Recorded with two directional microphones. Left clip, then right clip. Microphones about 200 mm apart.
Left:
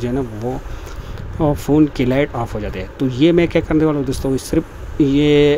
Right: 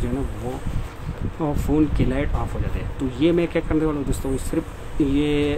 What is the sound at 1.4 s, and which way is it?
Speech, 30° left (ahead or behind).